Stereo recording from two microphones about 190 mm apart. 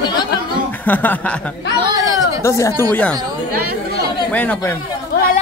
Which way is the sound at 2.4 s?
15° left (ahead or behind).